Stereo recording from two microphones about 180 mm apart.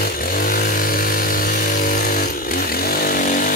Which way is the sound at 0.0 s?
50° left (ahead or behind).